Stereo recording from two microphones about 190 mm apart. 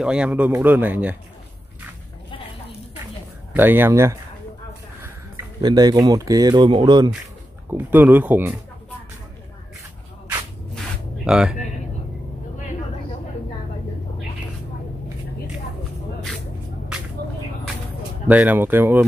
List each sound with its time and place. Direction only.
0.0 s speech: 5° right (ahead or behind)
3.5 s speech: 10° right (ahead or behind)
5.6 s speech: 20° right (ahead or behind)
7.7 s speech: 10° right (ahead or behind)
11.2 s speech: 5° right (ahead or behind)
18.3 s speech: 10° right (ahead or behind)